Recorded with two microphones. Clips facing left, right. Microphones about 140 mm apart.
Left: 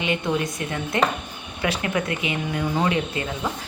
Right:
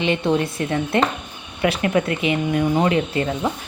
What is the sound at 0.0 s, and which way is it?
Speech, 25° right (ahead or behind).